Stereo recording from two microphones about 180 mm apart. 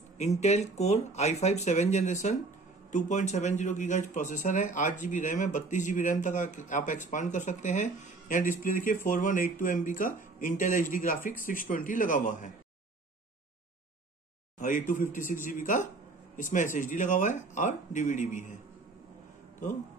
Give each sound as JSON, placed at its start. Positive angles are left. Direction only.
{"t": 0.4, "sound": "speech", "side_deg": 40}
{"t": 14.6, "sound": "speech", "side_deg": 45}